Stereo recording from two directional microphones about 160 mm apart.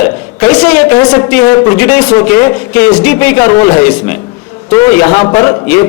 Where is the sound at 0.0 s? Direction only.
10° left (ahead or behind).